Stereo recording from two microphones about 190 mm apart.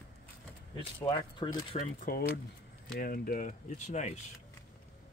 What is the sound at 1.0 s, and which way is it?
Speech, 25° left (ahead or behind).